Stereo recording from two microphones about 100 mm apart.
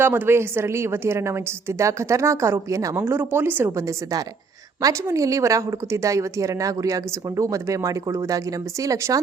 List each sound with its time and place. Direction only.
0.0 s a woman's voice: 25° right (ahead or behind)
3.0 s a woman's voice: 20° right (ahead or behind)